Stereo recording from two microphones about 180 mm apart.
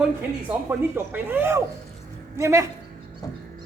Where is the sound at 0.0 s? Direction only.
10° right (ahead or behind).